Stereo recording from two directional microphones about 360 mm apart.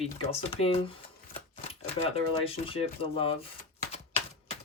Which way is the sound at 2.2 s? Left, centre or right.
Centre.